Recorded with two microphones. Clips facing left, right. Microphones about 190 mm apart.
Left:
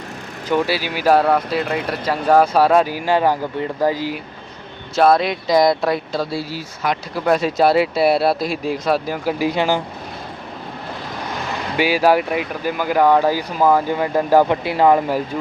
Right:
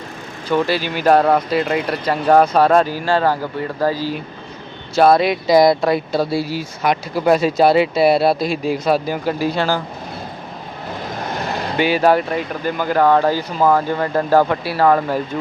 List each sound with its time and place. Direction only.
0.5 s speech: 10° left (ahead or behind)
4.9 s speech: centre (ahead or behind)
7.3 s speech: centre (ahead or behind)
9.4 s speech: 15° left (ahead or behind)
11.8 s speech: 5° left (ahead or behind)